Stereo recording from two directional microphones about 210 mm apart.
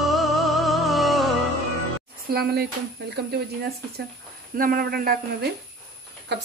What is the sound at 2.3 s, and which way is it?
Speech, 45° right (ahead or behind).